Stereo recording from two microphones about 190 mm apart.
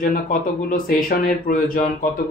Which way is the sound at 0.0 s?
45° left (ahead or behind).